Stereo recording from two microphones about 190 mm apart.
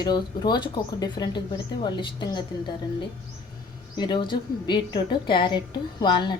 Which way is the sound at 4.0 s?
25° left (ahead or behind).